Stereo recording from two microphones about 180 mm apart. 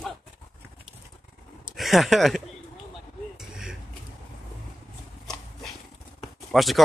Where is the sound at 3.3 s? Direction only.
5° right (ahead or behind).